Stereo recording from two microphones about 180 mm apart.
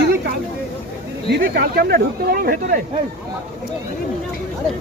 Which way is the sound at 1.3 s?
55° right (ahead or behind).